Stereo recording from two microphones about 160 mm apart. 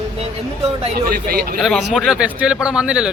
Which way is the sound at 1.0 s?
70° right (ahead or behind).